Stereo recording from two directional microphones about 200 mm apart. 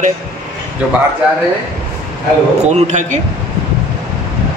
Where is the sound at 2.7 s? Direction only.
35° right (ahead or behind).